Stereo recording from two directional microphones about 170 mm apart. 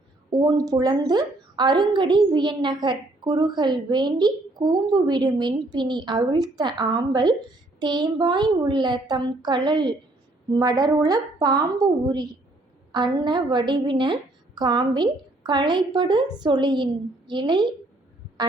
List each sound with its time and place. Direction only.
0.3 s a woman's voice: 25° right (ahead or behind)